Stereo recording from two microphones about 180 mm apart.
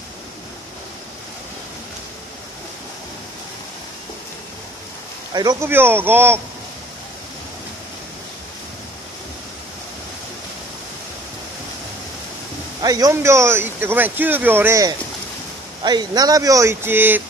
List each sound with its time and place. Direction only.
5.3 s speech: 20° right (ahead or behind)
12.8 s speech: 20° right (ahead or behind)